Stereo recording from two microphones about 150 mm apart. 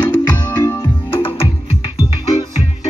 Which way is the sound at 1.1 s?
40° left (ahead or behind).